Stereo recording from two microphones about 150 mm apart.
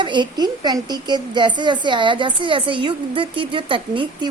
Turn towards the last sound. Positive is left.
turn(degrees=-35)  # may be behind; listen again after turning